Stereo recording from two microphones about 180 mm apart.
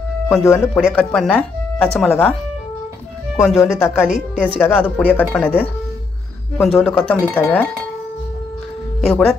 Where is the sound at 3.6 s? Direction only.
15° left (ahead or behind).